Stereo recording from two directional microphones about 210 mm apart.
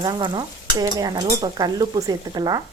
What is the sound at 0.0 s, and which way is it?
Stir, 20° right (ahead or behind).